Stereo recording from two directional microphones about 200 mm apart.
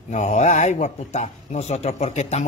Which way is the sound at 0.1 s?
35° left (ahead or behind).